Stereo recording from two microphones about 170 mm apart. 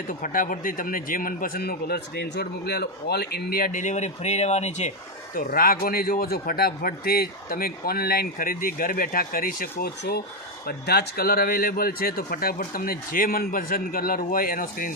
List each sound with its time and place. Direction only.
0.1 s speech: 55° left (ahead or behind)
5.3 s speech: 60° left (ahead or behind)